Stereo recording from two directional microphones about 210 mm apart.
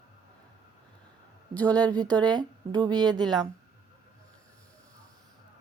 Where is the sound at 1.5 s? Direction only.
5° left (ahead or behind).